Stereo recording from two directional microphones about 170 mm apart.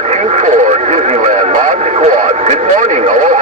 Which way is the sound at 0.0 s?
40° right (ahead or behind).